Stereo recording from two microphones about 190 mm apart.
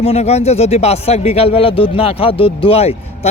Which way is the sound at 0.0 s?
35° left (ahead or behind).